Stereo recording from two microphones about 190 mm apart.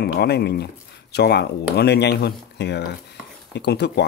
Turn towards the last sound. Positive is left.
turn(degrees=60)  # may be behind; listen again after turning